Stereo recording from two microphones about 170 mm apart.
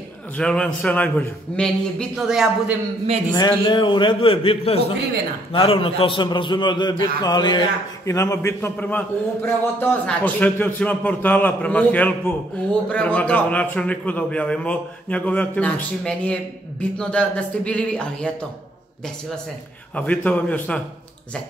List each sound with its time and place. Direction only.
0.4 s a man's voice: 5° left (ahead or behind)
3.3 s a man's voice: 25° left (ahead or behind); by 18.3 s 5° left (ahead or behind)
20.0 s a man's voice: 10° left (ahead or behind)